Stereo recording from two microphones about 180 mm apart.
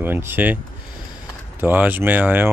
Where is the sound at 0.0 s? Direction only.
10° right (ahead or behind).